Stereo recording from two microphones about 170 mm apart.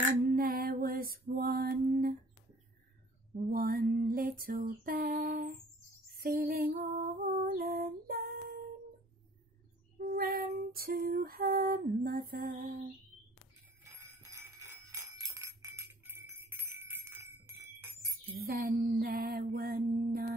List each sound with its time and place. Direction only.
0.3 s mantra: 60° right (ahead or behind)
3.4 s a sound: 60° right (ahead or behind)
6.2 s lullaby: 60° right (ahead or behind)
9.9 s child singing: 60° right (ahead or behind)
10.6 s music: 65° right (ahead or behind)
11.2 s lullaby: 60° right (ahead or behind)
13.8 s jingle bell: 15° right (ahead or behind)
18.3 s mantra: 60° right (ahead or behind)